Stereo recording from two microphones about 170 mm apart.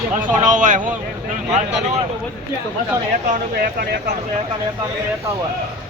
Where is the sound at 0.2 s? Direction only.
50° right (ahead or behind).